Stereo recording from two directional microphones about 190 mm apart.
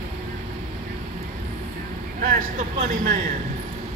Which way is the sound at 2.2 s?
45° right (ahead or behind).